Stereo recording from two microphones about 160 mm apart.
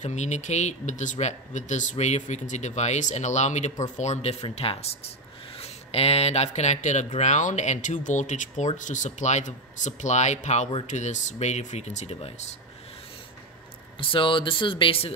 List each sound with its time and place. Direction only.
0.0 s speech: 45° left (ahead or behind)
13.9 s speech: 30° left (ahead or behind)